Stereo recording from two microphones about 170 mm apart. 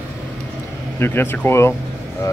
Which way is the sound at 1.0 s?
15° left (ahead or behind).